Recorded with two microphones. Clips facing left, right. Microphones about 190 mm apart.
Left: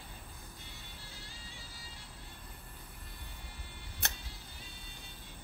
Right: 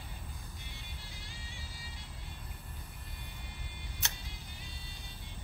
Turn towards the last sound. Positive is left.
turn(degrees=55)  # may be behind; listen again after turning